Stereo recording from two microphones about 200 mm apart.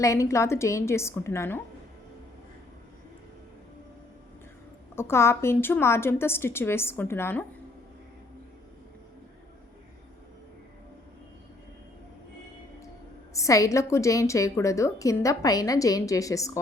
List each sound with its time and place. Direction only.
0.0 s a woman's voice: 15° left (ahead or behind)
4.9 s a woman's voice: 15° left (ahead or behind)
13.3 s a woman's voice: 15° left (ahead or behind)